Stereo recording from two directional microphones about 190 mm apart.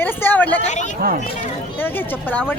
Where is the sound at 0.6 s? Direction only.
40° left (ahead or behind).